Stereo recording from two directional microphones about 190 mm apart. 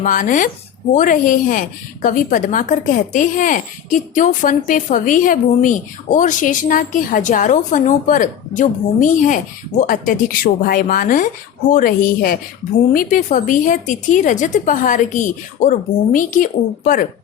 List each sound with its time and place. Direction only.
0.0 s a woman's voice: 45° left (ahead or behind)